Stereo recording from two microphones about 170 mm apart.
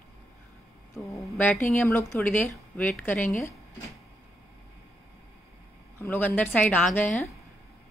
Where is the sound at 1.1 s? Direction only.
15° left (ahead or behind).